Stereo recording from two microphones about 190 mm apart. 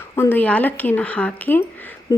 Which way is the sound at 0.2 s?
10° left (ahead or behind).